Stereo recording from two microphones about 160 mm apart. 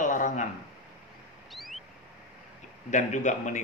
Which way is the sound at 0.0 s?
55° left (ahead or behind).